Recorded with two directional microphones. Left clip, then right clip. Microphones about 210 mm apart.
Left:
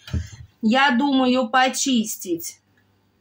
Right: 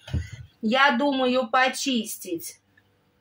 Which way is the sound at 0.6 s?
Centre (ahead or behind).